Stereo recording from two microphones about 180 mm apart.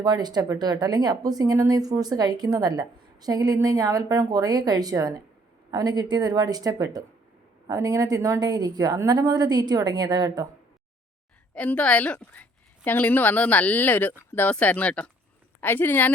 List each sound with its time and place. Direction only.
0.0 s speech: 25° right (ahead or behind)
11.5 s a woman's voice: 10° left (ahead or behind)